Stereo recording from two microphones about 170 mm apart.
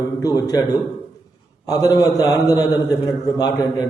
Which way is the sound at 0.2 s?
20° left (ahead or behind).